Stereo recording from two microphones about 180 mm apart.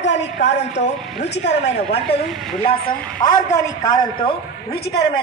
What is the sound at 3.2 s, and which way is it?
A man's voice, 20° left (ahead or behind).